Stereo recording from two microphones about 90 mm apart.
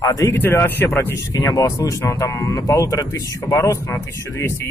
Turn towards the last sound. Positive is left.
turn(degrees=30)  # may be behind; listen again after turning